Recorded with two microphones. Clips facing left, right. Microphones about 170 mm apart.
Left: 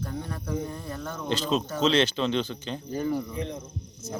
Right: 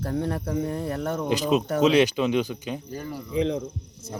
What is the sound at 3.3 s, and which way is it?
Speech, 90° right.